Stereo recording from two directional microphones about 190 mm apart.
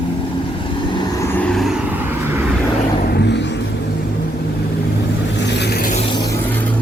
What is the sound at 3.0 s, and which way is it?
Vehicle, 60° left (ahead or behind).